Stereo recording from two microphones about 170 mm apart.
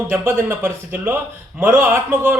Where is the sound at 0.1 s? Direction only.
10° right (ahead or behind).